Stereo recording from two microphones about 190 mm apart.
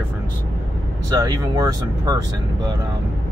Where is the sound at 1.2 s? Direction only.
20° right (ahead or behind).